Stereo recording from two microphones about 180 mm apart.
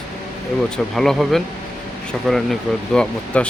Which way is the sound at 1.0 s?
Centre (ahead or behind).